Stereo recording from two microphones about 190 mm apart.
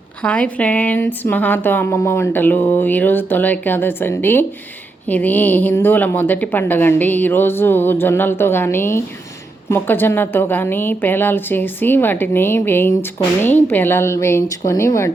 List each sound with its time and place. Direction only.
0.2 s a woman's voice: 5° left (ahead or behind)